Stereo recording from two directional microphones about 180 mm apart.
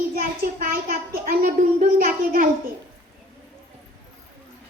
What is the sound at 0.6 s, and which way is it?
A child's voice, 55° right (ahead or behind).